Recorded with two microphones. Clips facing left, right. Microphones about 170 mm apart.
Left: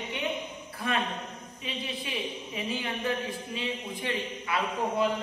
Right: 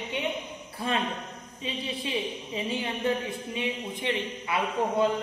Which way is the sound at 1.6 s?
25° right (ahead or behind).